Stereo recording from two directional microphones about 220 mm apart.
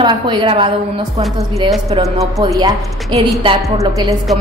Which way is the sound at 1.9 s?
20° right (ahead or behind).